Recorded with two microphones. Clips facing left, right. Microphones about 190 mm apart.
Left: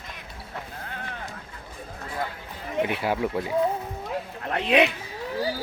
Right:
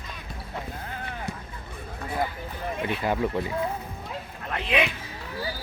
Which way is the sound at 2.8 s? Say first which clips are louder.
Left 2 dB; 10° left (ahead or behind).